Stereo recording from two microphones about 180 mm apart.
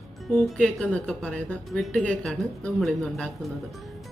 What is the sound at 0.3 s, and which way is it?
Speech, 5° left (ahead or behind).